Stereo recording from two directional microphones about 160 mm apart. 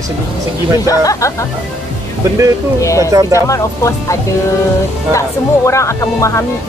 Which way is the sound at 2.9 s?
20° right (ahead or behind).